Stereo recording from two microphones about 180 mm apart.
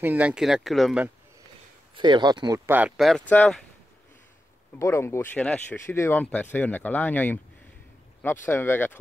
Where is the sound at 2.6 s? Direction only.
10° right (ahead or behind).